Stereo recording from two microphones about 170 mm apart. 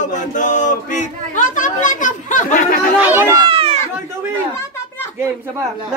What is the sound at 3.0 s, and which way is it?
Speech, 15° right (ahead or behind).